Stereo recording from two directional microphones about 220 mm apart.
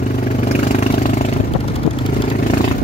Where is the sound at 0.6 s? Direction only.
35° left (ahead or behind).